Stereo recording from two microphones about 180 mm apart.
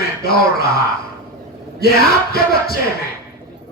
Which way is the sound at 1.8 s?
60° left (ahead or behind).